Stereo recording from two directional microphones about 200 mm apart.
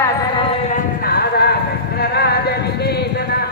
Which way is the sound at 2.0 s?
55° left (ahead or behind).